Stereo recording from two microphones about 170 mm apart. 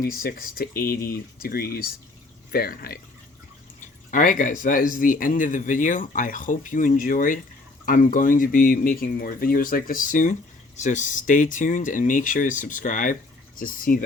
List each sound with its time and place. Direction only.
0.0 s speech: 60° left (ahead or behind)